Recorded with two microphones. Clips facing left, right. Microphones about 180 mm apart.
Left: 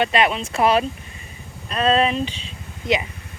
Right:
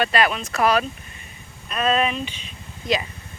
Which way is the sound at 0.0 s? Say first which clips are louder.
Left 2 dB; 25° left (ahead or behind).